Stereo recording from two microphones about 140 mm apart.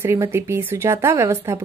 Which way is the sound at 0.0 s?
20° right (ahead or behind).